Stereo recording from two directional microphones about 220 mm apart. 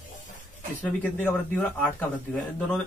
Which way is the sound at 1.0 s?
10° left (ahead or behind).